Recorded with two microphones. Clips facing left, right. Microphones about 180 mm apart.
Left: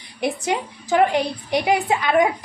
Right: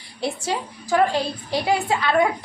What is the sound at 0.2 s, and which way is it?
A woman's voice, 15° left (ahead or behind).